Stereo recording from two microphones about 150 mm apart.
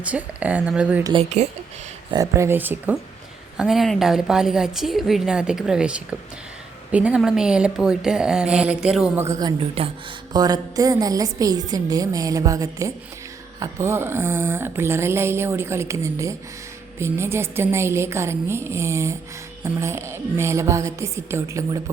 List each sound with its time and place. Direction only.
0.0 s speech: 10° right (ahead or behind)
1.2 s speech: 50° right (ahead or behind)
2.0 s speech: 25° right (ahead or behind); by 9.0 s 5° right (ahead or behind)
9.1 s a woman's voice: 20° right (ahead or behind)
9.6 s speech: 40° right (ahead or behind)
10.3 s a woman's voice: 25° right (ahead or behind)